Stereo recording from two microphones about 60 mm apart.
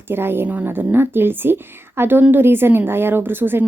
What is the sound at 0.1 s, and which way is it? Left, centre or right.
A woman's voice, right.